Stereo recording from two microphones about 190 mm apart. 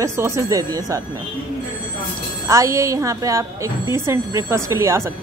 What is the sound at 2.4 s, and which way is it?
Speech, 15° right (ahead or behind).